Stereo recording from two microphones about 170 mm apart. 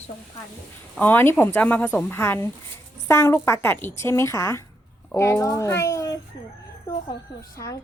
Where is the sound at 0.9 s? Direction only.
10° left (ahead or behind).